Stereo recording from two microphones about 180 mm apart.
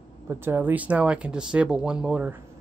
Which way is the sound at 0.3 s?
15° right (ahead or behind).